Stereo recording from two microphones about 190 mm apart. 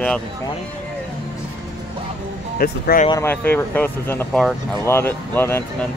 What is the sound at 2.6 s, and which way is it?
Speech, 50° left (ahead or behind).